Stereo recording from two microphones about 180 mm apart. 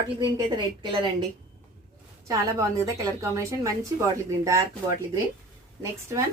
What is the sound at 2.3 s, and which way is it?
A woman's voice, 15° right (ahead or behind).